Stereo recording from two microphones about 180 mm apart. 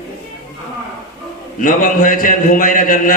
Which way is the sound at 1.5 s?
50° left (ahead or behind).